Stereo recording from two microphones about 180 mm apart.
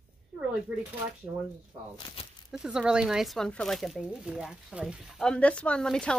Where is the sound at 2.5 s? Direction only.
5° right (ahead or behind).